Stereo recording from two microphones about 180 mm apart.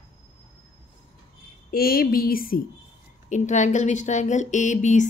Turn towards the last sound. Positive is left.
turn(degrees=40)  # may be behind; listen again after turning